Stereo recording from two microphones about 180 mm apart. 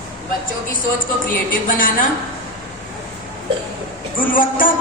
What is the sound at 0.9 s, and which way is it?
A woman's voice, 50° left (ahead or behind).